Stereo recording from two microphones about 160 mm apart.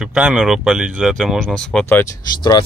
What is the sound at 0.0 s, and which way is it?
Speech, 5° right (ahead or behind).